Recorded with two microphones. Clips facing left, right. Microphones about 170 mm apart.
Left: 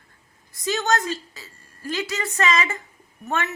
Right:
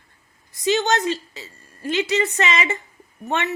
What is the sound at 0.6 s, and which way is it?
Speech, 20° right (ahead or behind).